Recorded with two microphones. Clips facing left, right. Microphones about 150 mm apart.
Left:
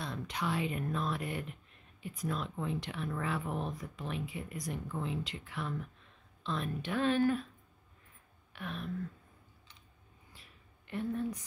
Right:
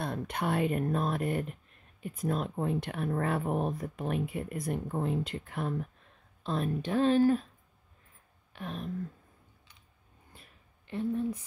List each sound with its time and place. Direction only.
0.0 s speech: 55° right (ahead or behind); by 7.4 s 35° right (ahead or behind)
8.5 s speech: 35° right (ahead or behind)
10.9 s speech: 25° right (ahead or behind)